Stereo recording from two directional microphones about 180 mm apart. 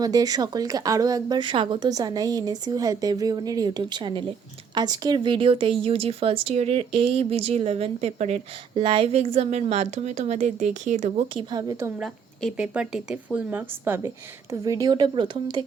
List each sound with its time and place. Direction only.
0.0 s speech: 20° right (ahead or behind); by 11.3 s 40° right (ahead or behind)
11.3 s speech: 25° right (ahead or behind)
11.9 s speech: centre (ahead or behind); by 15.6 s 25° right (ahead or behind)